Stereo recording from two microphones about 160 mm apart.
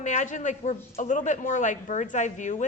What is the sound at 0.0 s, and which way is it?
A woman's voice, 50° left (ahead or behind).